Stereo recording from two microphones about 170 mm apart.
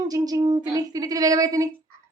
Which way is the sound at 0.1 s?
20° right (ahead or behind).